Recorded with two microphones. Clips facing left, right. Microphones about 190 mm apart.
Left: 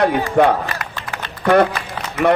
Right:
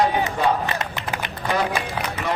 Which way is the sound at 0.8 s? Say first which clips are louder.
Right 1 dB; 20° right (ahead or behind).